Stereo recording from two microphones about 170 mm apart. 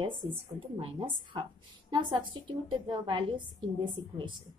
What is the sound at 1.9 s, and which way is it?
A woman's voice, 25° right (ahead or behind).